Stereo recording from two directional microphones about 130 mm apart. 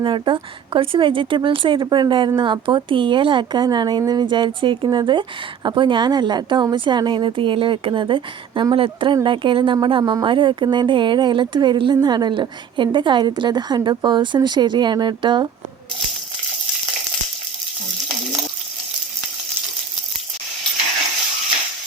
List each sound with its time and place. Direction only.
0.0 s speech: 40° right (ahead or behind)